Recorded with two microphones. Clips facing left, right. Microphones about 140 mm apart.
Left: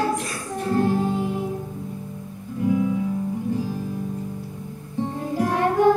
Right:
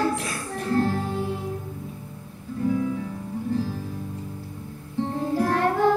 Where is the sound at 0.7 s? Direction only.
15° left (ahead or behind).